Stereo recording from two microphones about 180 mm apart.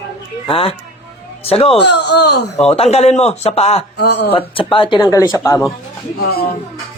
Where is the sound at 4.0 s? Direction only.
70° left (ahead or behind).